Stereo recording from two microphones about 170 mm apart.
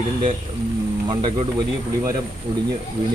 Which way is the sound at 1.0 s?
30° right (ahead or behind).